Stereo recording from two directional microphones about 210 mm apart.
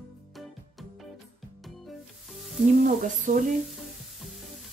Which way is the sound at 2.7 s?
40° right (ahead or behind).